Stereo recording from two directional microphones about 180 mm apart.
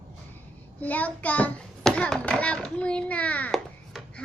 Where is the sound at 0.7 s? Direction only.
10° left (ahead or behind).